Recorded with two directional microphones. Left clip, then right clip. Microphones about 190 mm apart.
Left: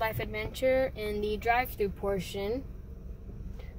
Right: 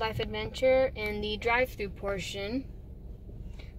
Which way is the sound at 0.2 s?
10° right (ahead or behind).